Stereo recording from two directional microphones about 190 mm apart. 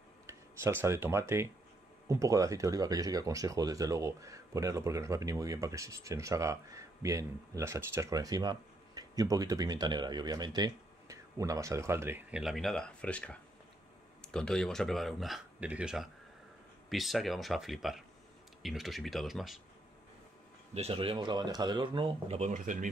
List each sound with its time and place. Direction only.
0.3 s speech: 15° right (ahead or behind)
20.7 s speech: 30° right (ahead or behind)